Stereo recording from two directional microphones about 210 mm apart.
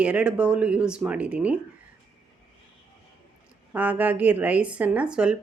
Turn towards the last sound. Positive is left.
turn(degrees=-5)  # may be behind; listen again after turning